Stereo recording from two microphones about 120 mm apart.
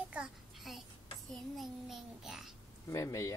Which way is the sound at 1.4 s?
Centre (ahead or behind).